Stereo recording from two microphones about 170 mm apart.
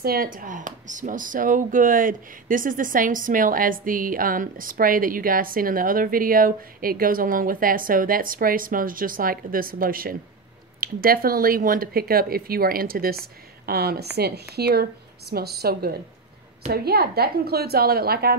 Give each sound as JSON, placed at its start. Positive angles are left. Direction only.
{"t": 0.0, "sound": "a woman's voice", "side_deg": -60}